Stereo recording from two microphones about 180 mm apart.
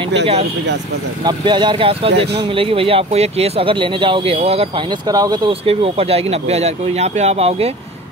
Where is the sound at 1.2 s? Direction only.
25° right (ahead or behind).